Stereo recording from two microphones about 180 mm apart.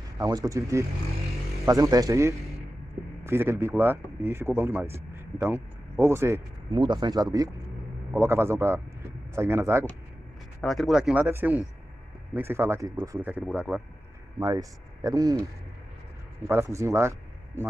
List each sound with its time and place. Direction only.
0.2 s speech: 20° right (ahead or behind)
6.7 s a man's voice: 25° right (ahead or behind)
10.6 s speech: centre (ahead or behind)
14.4 s speech: 20° right (ahead or behind)
16.4 s speech: 15° right (ahead or behind)